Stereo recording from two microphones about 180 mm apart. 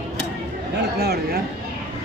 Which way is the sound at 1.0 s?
60° right (ahead or behind).